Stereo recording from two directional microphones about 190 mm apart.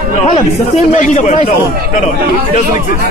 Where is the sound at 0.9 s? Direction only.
40° left (ahead or behind).